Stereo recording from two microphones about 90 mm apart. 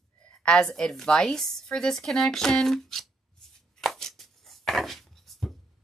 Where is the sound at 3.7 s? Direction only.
5° left (ahead or behind).